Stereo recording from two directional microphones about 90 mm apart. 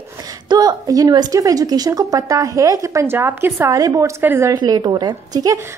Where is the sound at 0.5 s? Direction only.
45° right (ahead or behind); by 3.7 s 25° right (ahead or behind).